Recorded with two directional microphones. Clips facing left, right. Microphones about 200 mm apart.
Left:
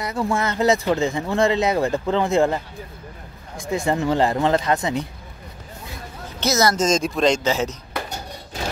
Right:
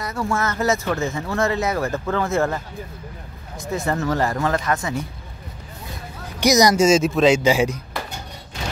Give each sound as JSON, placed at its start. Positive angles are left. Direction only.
{"t": 0.0, "sound": "speech", "side_deg": 15}
{"t": 6.4, "sound": "speech", "side_deg": -15}